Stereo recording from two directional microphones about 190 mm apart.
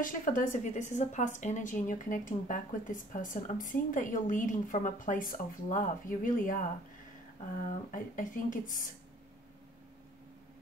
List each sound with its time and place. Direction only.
0.0 s speech: 45° left (ahead or behind)